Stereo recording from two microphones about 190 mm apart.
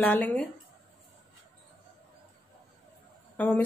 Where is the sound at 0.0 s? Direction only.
5° left (ahead or behind).